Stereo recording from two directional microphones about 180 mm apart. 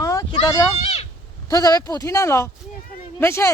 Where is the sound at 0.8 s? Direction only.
35° left (ahead or behind).